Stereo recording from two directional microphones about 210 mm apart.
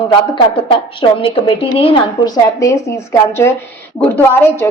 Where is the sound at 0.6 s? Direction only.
25° left (ahead or behind).